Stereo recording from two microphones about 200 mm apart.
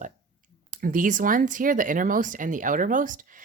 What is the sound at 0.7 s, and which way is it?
Speech, 40° right (ahead or behind).